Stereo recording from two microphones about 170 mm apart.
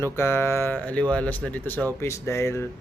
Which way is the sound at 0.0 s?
15° left (ahead or behind).